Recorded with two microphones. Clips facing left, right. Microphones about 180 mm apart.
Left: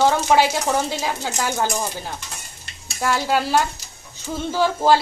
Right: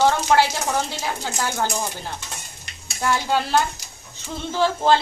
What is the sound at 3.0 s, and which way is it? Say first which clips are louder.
Speech: left 1 dB; 5° left (ahead or behind).